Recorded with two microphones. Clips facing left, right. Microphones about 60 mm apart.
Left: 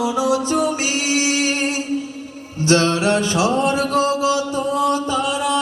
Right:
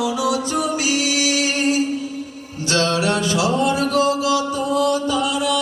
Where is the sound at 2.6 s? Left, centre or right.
Left.